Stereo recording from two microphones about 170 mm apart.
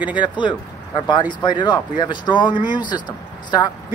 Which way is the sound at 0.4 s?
25° left (ahead or behind).